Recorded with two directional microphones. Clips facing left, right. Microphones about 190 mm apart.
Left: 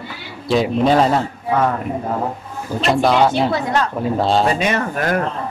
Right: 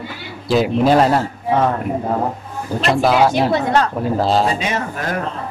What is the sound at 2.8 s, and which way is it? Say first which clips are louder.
Speech: even; centre (ahead or behind).